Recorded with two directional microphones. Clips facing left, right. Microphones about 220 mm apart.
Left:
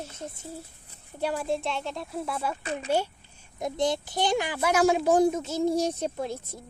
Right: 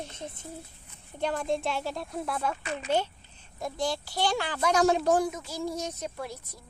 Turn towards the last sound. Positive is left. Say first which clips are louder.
# left 6 dB
turn(degrees=25)  # may be behind; listen again after turning